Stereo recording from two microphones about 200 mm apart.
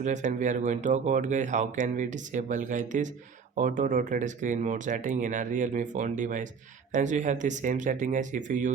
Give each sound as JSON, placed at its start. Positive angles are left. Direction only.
{"t": 0.0, "sound": "speech", "side_deg": -35}